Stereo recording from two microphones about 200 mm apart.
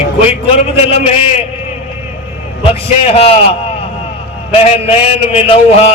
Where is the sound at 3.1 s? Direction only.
30° left (ahead or behind).